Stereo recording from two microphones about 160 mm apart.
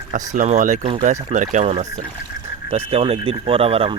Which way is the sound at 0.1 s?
50° right (ahead or behind).